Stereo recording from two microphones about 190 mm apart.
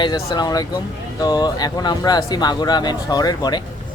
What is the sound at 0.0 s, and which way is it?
Speech, 20° left (ahead or behind).